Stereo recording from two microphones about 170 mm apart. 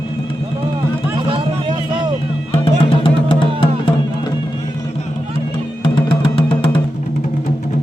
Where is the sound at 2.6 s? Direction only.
30° left (ahead or behind).